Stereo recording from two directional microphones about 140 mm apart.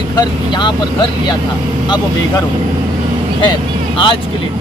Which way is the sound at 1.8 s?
30° left (ahead or behind).